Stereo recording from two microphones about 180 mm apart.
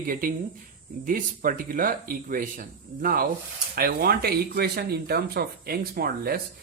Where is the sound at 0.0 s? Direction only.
50° right (ahead or behind).